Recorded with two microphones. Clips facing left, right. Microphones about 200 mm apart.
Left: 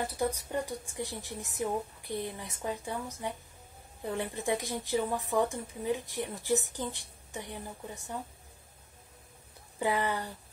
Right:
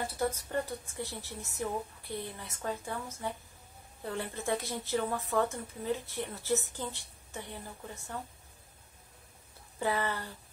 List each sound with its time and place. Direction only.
0.0 s a woman's voice: 15° left (ahead or behind)
9.8 s a woman's voice: 15° left (ahead or behind)